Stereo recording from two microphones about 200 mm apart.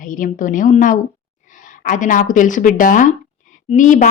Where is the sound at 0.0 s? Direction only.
40° left (ahead or behind).